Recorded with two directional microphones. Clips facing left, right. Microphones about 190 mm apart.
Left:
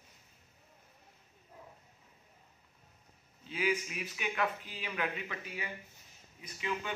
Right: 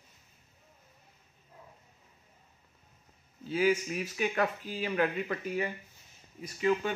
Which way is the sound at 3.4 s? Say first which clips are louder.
Right 6 dB; 40° right (ahead or behind).